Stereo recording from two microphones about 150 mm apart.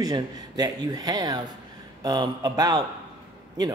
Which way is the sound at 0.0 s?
25° right (ahead or behind).